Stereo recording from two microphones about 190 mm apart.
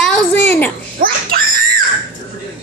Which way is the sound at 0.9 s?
50° right (ahead or behind).